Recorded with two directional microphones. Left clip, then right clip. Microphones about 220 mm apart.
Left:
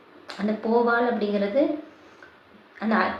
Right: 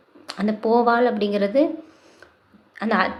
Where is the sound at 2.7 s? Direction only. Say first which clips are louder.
Right 3 dB; 40° right (ahead or behind).